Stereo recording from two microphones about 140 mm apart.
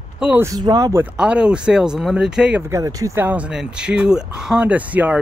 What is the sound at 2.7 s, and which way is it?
Speech, 20° right (ahead or behind).